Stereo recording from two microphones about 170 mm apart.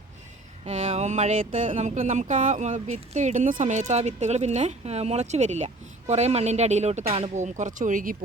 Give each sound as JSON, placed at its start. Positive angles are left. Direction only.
{"t": 0.6, "sound": "speech", "side_deg": -40}